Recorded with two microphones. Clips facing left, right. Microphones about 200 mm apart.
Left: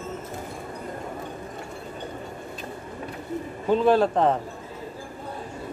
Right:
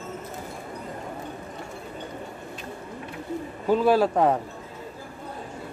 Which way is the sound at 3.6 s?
5° right (ahead or behind).